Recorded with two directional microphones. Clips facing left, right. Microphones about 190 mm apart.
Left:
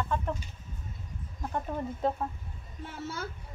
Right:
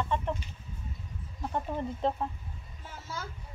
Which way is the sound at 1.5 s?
Centre (ahead or behind).